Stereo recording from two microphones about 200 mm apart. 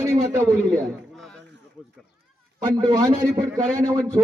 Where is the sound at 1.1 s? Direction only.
5° left (ahead or behind).